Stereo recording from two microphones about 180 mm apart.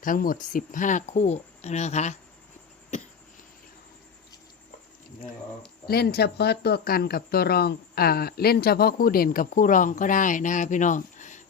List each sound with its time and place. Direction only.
0.0 s speech: 50° left (ahead or behind)
5.9 s speech: 60° left (ahead or behind); by 11.4 s 45° left (ahead or behind)